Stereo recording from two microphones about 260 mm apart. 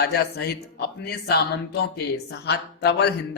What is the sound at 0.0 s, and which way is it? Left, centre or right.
Speech, left.